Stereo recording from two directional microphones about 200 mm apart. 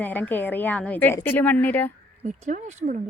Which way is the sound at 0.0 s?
10° left (ahead or behind).